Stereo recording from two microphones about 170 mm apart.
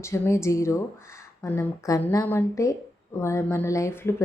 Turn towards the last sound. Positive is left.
turn(degrees=15)  # may be behind; listen again after turning